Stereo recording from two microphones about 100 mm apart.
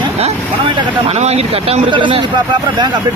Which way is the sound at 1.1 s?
90° right.